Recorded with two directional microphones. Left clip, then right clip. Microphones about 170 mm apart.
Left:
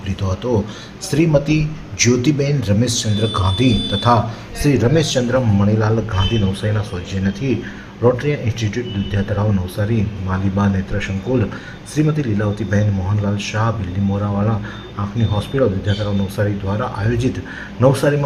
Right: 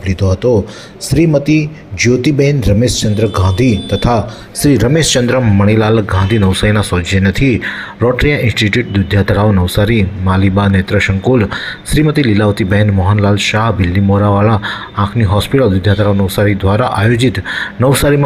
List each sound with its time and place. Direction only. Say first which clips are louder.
0.1 s speech: right 9 dB; 35° right (ahead or behind)